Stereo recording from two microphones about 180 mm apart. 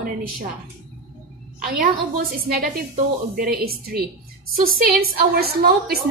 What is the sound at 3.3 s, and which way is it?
A woman's voice, 55° right (ahead or behind).